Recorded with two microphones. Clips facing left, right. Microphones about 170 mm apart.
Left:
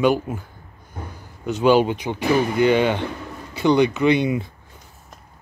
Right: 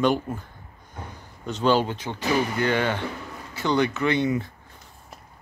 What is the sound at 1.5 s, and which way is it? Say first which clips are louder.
Speech: left 5 dB; 10° left (ahead or behind).